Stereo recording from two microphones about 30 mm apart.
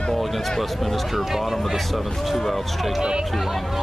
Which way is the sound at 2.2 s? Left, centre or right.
Centre.